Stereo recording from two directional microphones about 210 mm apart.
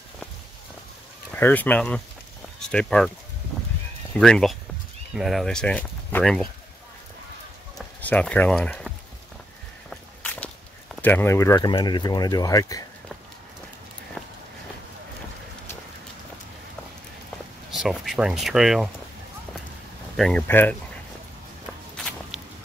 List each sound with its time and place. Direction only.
1.3 s speech: 10° left (ahead or behind)
4.1 s speech: 5° left (ahead or behind)
7.7 s a sound: 5° left (ahead or behind)
9.8 s walk: 5° left (ahead or behind)
11.0 s speech: 10° left (ahead or behind)
17.6 s speech: centre (ahead or behind)
20.2 s speech: 5° left (ahead or behind)
21.9 s walk: centre (ahead or behind)